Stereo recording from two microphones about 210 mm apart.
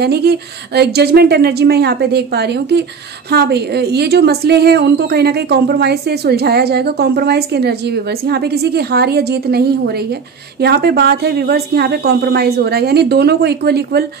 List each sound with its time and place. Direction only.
0.0 s a woman's voice: 50° right (ahead or behind)